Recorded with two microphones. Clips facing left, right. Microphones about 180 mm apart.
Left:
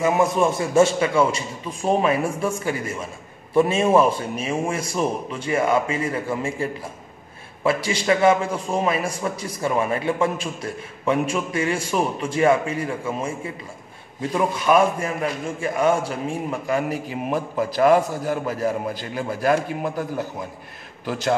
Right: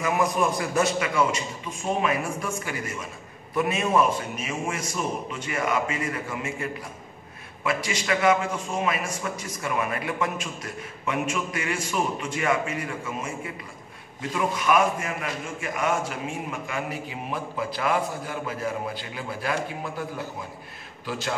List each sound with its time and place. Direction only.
0.0 s a man's voice: 25° left (ahead or behind); by 19.5 s 45° left (ahead or behind)
21.0 s a man's voice: 45° left (ahead or behind)